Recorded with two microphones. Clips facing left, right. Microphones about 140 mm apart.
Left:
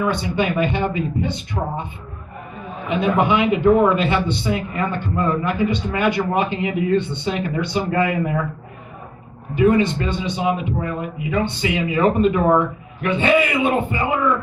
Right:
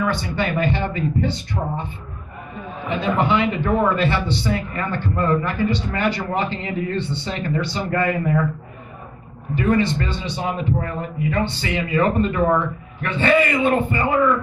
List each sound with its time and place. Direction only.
0.0 s a man's voice: 15° left (ahead or behind)
1.5 s speech: 35° left (ahead or behind)
2.9 s a man's voice: 15° left (ahead or behind)
9.6 s a man's voice: 15° left (ahead or behind)